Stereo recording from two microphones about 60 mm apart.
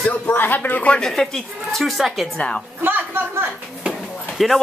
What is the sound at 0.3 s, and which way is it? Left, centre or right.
Speech, left.